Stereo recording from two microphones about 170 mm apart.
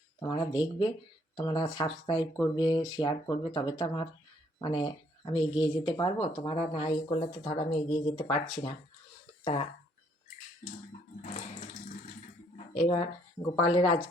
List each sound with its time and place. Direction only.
0.2 s speech: 25° left (ahead or behind)
9.4 s speech: 35° left (ahead or behind)
11.2 s water: 45° left (ahead or behind)
12.8 s speech: 35° left (ahead or behind)